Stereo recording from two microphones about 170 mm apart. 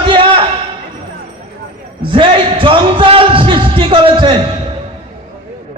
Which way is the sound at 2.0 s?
30° right (ahead or behind).